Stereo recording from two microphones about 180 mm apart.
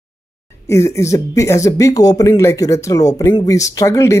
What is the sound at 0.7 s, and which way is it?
Speech, 15° left (ahead or behind).